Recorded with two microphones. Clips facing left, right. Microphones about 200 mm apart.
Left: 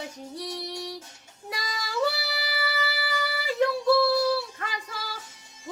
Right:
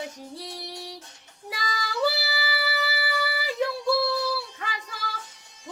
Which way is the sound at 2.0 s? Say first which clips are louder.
Right 2 dB; 5° right (ahead or behind).